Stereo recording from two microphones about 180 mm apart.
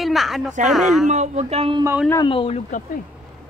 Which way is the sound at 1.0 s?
40° right (ahead or behind).